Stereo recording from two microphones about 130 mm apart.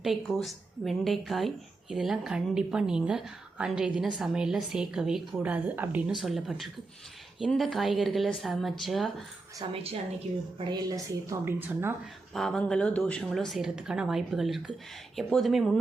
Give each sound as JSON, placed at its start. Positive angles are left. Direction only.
{"t": 0.0, "sound": "a woman's voice", "side_deg": 0}
{"t": 9.7, "sound": "a woman's voice", "side_deg": -50}
{"t": 10.6, "sound": "speech", "side_deg": -30}
{"t": 12.3, "sound": "a woman's voice", "side_deg": 5}